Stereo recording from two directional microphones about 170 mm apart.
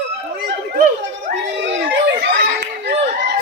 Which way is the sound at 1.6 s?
90° right.